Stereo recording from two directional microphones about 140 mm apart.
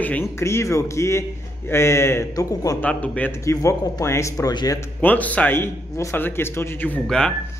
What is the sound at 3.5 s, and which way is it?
A man's voice, 25° left (ahead or behind).